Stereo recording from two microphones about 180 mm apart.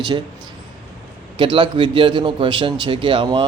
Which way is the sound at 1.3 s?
30° right (ahead or behind).